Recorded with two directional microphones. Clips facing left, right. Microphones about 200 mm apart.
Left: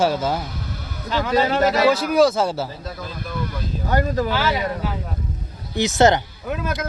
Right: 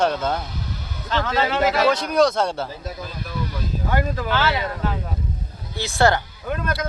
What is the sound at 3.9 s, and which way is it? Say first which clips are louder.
Speech: left 3 dB; 40° left (ahead or behind).